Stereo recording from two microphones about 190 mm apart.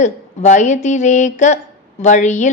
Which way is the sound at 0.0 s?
40° left (ahead or behind).